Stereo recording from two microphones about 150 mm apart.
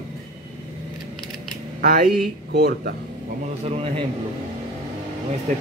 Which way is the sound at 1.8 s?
75° right (ahead or behind).